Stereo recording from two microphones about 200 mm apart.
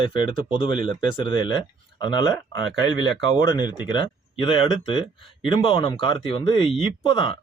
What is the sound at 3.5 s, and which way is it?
Speech, 20° left (ahead or behind).